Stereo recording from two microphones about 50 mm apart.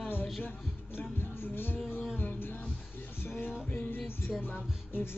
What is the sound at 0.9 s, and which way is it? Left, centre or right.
Music, left.